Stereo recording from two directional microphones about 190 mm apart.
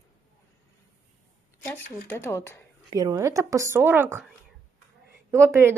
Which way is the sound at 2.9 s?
20° right (ahead or behind).